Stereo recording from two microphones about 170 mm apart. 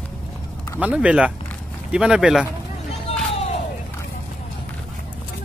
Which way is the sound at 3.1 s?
40° left (ahead or behind).